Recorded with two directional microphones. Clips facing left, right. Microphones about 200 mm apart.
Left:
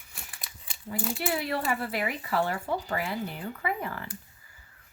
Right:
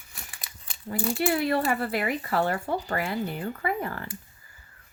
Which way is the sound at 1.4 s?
55° right (ahead or behind).